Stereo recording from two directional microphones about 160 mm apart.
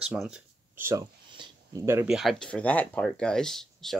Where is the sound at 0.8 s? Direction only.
15° right (ahead or behind).